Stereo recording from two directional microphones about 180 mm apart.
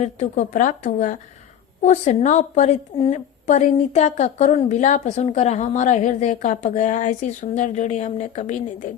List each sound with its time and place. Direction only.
0.0 s a woman's voice: 40° left (ahead or behind)